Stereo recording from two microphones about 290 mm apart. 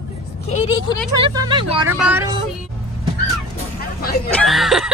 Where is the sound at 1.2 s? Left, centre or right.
Centre.